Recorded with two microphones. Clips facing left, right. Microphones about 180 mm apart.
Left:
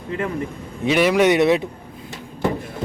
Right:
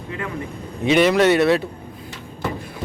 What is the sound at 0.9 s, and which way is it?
Speech, 5° left (ahead or behind).